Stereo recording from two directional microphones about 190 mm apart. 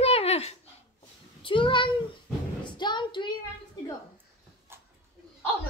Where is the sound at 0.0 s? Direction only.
30° left (ahead or behind).